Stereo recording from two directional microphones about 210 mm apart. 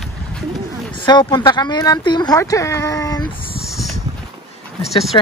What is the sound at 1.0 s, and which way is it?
Speech, 25° left (ahead or behind).